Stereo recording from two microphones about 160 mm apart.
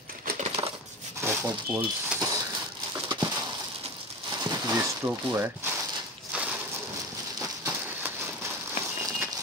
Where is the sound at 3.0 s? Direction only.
25° right (ahead or behind).